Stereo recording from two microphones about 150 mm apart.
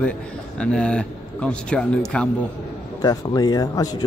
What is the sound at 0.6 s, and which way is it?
A man's voice, 5° left (ahead or behind).